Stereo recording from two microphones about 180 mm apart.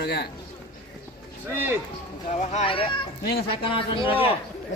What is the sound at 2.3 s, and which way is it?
A man's voice, 40° left (ahead or behind).